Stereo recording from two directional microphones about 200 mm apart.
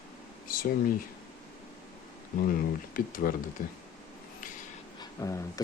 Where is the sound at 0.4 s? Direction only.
45° left (ahead or behind).